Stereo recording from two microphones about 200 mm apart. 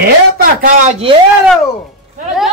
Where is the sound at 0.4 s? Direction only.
45° right (ahead or behind).